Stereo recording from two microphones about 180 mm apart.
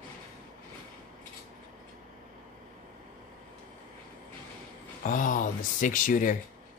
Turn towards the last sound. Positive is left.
turn(degrees=50)  # may be behind; listen again after turning